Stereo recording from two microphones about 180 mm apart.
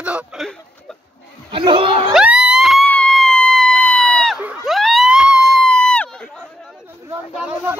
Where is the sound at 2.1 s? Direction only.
5° right (ahead or behind).